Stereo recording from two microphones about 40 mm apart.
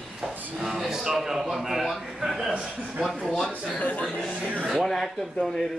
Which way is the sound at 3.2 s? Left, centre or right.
Centre.